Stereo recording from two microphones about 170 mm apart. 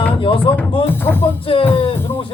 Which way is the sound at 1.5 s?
35° left (ahead or behind).